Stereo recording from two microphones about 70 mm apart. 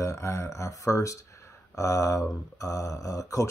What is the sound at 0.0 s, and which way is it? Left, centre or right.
Speech, left.